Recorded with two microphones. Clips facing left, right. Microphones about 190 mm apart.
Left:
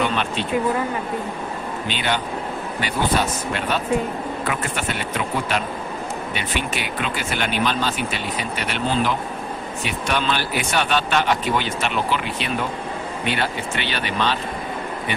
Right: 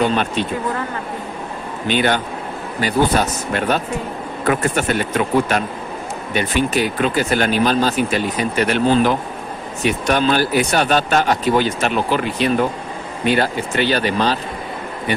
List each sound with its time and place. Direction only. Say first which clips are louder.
0.0 s speech: right 5 dB; 40° right (ahead or behind)
1.9 s a man's voice: right 8 dB; 50° right (ahead or behind)